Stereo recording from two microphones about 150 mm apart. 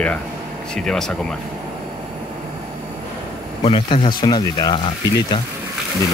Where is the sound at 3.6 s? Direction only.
35° left (ahead or behind).